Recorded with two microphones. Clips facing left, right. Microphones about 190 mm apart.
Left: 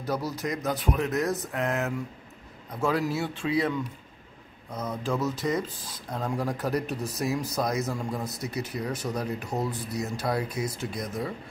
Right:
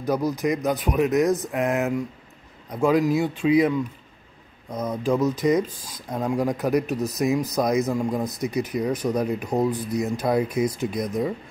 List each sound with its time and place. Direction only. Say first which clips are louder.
0.0 s speech: right 7 dB; 15° right (ahead or behind)